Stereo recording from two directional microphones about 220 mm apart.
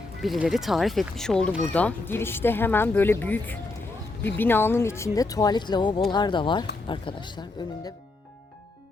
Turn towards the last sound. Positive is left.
turn(degrees=20)  # may be behind; listen again after turning